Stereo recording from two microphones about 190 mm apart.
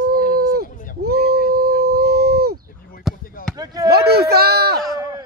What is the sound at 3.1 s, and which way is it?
Basketball bounce, centre (ahead or behind).